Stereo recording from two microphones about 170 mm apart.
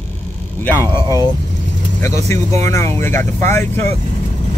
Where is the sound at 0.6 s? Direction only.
10° left (ahead or behind).